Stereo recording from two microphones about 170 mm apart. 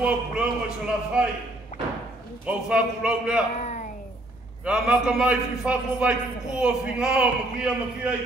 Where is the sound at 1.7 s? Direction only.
50° left (ahead or behind).